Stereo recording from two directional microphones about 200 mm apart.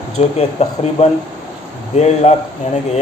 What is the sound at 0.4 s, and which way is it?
A man's voice, 30° left (ahead or behind).